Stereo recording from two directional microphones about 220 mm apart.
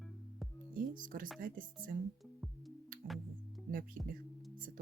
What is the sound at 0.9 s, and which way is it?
Speech, 40° right (ahead or behind).